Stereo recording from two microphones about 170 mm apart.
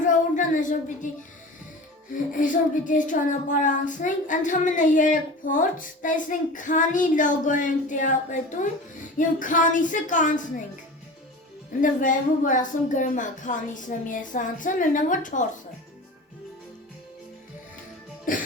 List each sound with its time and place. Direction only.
0.0 s a sound: 50° left (ahead or behind)
2.3 s child singing: 50° left (ahead or behind)
11.8 s child singing: 50° left (ahead or behind)
18.3 s cough: 55° left (ahead or behind)